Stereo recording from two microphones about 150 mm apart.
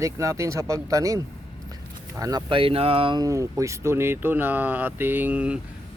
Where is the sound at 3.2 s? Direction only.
20° right (ahead or behind).